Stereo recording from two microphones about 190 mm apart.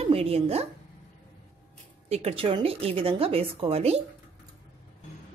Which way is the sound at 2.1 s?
35° right (ahead or behind).